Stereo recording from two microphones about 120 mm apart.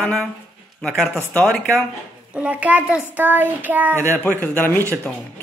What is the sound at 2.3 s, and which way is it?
Child singing, 10° right (ahead or behind).